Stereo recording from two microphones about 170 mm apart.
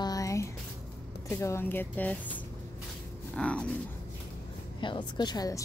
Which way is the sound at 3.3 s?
5° left (ahead or behind).